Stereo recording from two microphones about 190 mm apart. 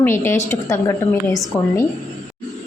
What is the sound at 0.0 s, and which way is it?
A woman's voice, 10° left (ahead or behind).